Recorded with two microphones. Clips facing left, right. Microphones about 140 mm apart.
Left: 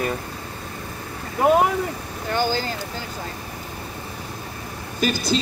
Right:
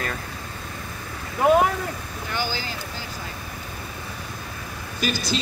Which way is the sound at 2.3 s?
50° left (ahead or behind).